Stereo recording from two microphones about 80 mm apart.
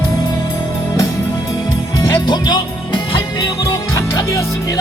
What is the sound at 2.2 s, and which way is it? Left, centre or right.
Music, left.